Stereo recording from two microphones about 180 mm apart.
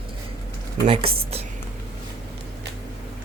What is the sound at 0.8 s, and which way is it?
Speech, 30° right (ahead or behind).